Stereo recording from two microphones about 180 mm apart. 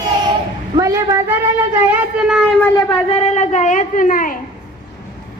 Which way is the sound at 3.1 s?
35° left (ahead or behind).